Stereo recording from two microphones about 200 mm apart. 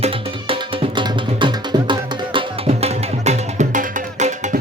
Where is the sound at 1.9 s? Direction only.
30° right (ahead or behind).